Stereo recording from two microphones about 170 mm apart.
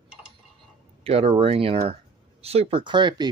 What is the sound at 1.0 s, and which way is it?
Speech, 35° right (ahead or behind).